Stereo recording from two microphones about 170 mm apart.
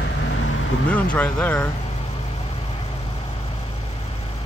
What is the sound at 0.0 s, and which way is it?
Vehicle, 90° left.